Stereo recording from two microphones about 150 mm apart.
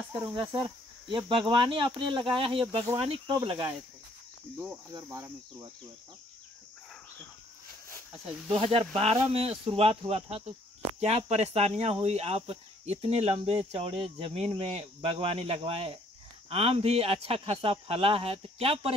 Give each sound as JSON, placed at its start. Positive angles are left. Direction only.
{"t": 0.3, "sound": "a man's voice", "side_deg": -30}
{"t": 5.0, "sound": "speech", "side_deg": -15}
{"t": 8.5, "sound": "a man's voice", "side_deg": -40}